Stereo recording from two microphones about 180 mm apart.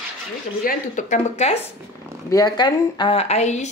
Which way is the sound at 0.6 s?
45° left (ahead or behind).